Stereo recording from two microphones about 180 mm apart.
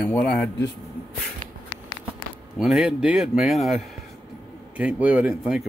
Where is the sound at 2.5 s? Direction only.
Centre (ahead or behind).